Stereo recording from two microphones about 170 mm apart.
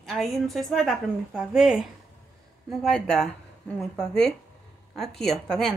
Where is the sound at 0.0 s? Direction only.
Centre (ahead or behind).